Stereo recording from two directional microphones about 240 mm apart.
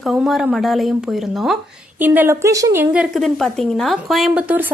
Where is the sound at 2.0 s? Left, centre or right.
Centre.